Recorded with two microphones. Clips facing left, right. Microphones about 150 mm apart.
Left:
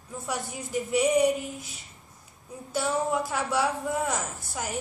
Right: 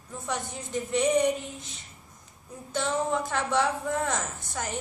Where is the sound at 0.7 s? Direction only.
10° left (ahead or behind).